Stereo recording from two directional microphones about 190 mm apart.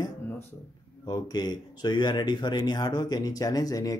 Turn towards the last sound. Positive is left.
turn(degrees=20)  # may be behind; listen again after turning